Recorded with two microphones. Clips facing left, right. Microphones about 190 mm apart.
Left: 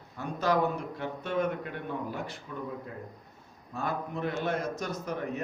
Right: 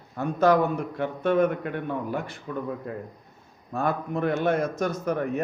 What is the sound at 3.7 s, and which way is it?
A man's voice, 55° right (ahead or behind).